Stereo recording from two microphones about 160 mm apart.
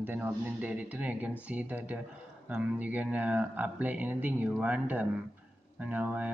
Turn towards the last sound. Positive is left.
turn(degrees=-10)  # may be behind; listen again after turning